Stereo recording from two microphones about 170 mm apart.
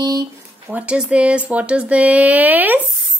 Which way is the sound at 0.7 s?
10° right (ahead or behind).